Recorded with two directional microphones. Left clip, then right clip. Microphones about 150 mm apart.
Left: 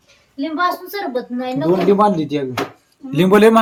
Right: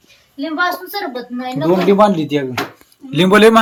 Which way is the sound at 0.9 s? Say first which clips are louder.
Left 1 dB; 40° left (ahead or behind).